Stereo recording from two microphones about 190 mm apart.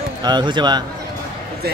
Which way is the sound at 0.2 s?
25° right (ahead or behind).